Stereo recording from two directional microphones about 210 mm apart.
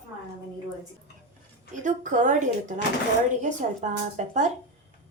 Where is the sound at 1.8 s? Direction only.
35° right (ahead or behind).